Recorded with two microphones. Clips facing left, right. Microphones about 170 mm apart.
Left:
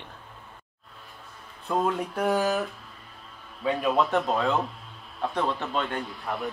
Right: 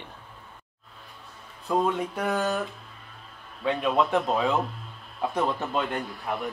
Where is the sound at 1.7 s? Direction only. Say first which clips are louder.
Right 1 dB; centre (ahead or behind).